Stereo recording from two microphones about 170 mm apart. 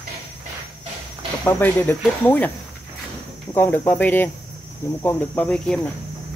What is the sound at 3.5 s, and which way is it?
Speech, 10° left (ahead or behind).